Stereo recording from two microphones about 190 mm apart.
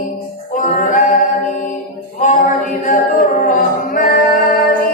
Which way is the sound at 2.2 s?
40° left (ahead or behind).